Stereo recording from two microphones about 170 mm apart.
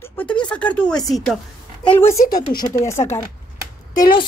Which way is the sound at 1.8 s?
15° left (ahead or behind).